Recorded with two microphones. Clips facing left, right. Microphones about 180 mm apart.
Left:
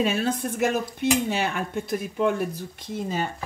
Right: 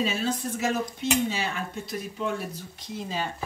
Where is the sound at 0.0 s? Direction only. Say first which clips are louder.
Left 3 dB; 55° left (ahead or behind).